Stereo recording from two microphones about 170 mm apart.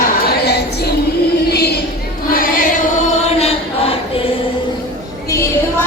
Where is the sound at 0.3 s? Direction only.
75° left (ahead or behind).